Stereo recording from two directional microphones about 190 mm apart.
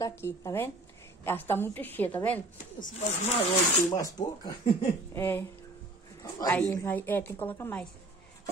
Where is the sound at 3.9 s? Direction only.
20° left (ahead or behind).